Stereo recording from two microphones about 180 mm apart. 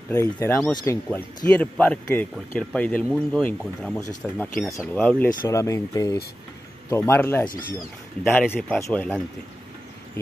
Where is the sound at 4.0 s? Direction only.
15° left (ahead or behind).